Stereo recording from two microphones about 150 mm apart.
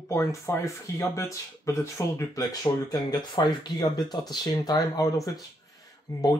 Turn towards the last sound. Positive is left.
turn(degrees=25)  # may be behind; listen again after turning